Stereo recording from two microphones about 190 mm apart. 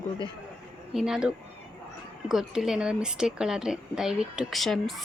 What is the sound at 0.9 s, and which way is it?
Speech, 5° right (ahead or behind).